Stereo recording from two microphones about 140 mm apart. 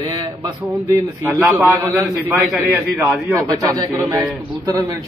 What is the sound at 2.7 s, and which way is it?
Speech, 10° right (ahead or behind).